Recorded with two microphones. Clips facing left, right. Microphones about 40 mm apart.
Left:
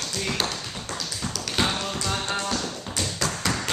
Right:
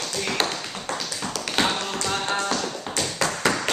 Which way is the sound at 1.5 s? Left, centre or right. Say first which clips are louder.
Right 2 dB; centre.